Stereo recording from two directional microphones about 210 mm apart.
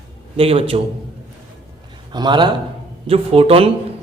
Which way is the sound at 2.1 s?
20° right (ahead or behind).